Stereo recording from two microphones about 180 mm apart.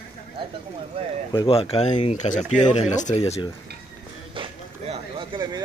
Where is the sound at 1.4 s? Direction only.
30° left (ahead or behind).